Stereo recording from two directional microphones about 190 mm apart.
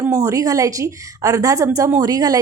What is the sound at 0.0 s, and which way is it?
A woman's voice, 15° right (ahead or behind).